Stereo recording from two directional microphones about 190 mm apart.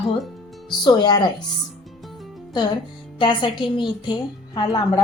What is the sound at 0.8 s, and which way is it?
Speech, 20° left (ahead or behind).